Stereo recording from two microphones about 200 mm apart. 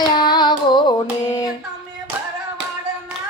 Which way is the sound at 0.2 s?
20° left (ahead or behind).